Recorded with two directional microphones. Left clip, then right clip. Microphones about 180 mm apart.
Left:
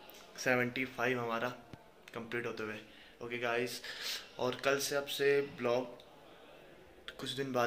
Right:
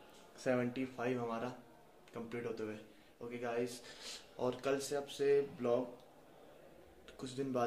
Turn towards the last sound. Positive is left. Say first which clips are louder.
# left 4 dB
turn(degrees=-10)  # may be behind; listen again after turning